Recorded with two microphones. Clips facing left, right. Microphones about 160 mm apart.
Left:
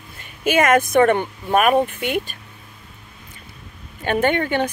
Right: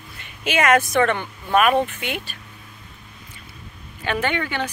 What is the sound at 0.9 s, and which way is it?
A woman's voice, 45° left (ahead or behind).